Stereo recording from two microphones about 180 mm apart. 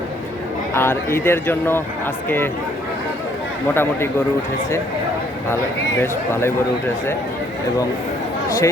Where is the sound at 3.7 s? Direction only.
15° left (ahead or behind).